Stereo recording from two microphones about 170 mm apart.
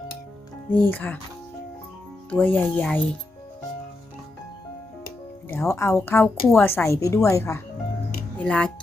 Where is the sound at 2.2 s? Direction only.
10° left (ahead or behind).